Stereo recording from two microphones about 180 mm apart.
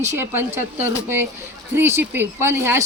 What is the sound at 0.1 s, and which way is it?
A woman's voice, 15° right (ahead or behind).